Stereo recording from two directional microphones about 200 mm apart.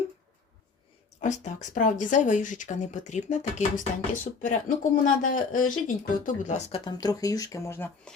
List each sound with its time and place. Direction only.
1.2 s speech: 40° left (ahead or behind); by 8.1 s 10° left (ahead or behind)